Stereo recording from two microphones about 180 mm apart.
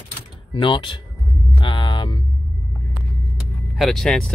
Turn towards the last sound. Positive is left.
turn(degrees=5)  # may be behind; listen again after turning